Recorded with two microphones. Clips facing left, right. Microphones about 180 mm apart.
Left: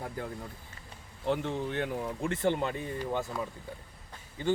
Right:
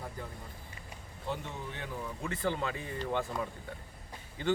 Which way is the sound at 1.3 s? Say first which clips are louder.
Left 8 dB; 80° left.